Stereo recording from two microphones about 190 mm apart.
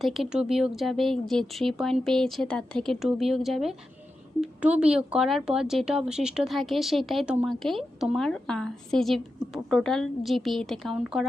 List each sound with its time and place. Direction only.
0.0 s speech: centre (ahead or behind)